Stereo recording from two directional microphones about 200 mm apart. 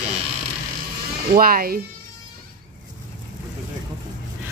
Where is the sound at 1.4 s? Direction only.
45° right (ahead or behind).